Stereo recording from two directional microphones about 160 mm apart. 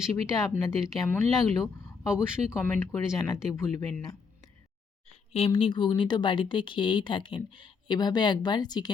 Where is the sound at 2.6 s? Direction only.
10° left (ahead or behind).